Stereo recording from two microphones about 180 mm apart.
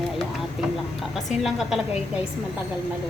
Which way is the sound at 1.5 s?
Centre (ahead or behind).